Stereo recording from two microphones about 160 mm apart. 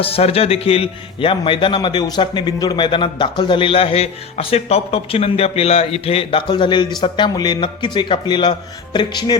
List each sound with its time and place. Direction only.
0.0 s a man's voice: 40° left (ahead or behind)